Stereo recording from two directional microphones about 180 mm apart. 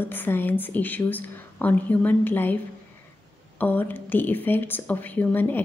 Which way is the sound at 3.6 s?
10° left (ahead or behind).